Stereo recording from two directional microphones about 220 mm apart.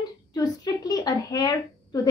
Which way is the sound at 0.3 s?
15° left (ahead or behind).